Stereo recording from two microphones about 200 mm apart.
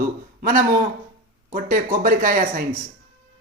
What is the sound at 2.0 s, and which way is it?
Speech, 45° right (ahead or behind).